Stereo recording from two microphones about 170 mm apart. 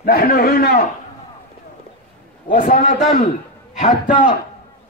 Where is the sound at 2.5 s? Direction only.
55° left (ahead or behind).